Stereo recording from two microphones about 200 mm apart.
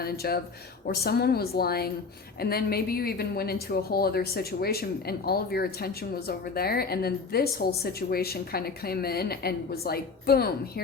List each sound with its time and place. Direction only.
0.0 s speech: 50° left (ahead or behind)